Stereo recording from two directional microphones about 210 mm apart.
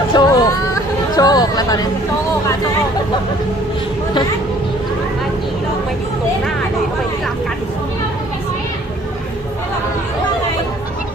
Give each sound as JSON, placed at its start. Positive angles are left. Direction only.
{"t": 0.1, "sound": "chatter", "side_deg": 20}